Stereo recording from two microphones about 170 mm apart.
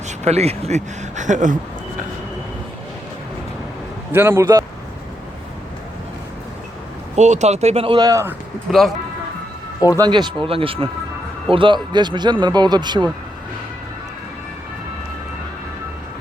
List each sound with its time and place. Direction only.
0.3 s speech: 40° right (ahead or behind)
4.1 s speech: 15° right (ahead or behind)
7.2 s speech: 45° right (ahead or behind); by 8.4 s 15° right (ahead or behind)
8.7 s speech: centre (ahead or behind)
10.0 s speech: 25° right (ahead or behind)